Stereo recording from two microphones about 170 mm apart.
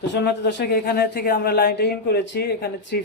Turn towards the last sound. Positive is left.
turn(degrees=70)  # may be behind; listen again after turning